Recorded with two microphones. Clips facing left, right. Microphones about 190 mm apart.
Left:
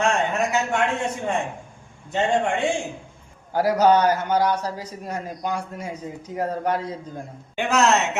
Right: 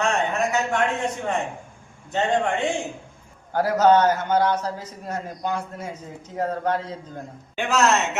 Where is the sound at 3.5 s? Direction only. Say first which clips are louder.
Even; 10° left (ahead or behind).